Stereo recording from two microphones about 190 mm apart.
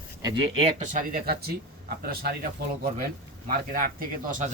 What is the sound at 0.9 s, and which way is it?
Speech, 45° right (ahead or behind).